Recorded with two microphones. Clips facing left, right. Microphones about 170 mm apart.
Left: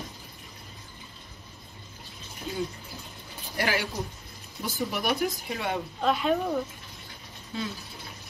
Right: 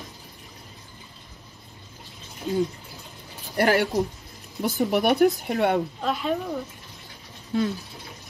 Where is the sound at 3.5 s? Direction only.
65° right (ahead or behind).